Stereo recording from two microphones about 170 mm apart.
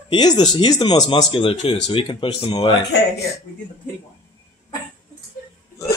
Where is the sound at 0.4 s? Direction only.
25° left (ahead or behind).